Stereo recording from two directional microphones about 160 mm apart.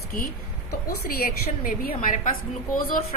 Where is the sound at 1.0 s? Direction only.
65° left (ahead or behind).